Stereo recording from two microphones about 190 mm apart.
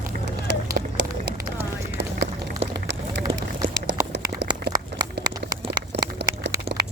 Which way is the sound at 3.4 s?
65° right (ahead or behind).